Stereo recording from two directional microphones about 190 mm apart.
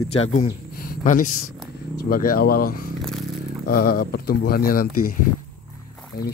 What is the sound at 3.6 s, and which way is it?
A man's voice, 50° left (ahead or behind).